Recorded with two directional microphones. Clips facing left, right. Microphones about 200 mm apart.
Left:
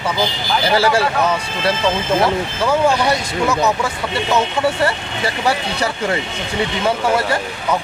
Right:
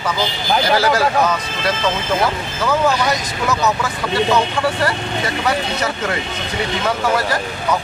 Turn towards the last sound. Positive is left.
turn(degrees=25)  # may be behind; listen again after turning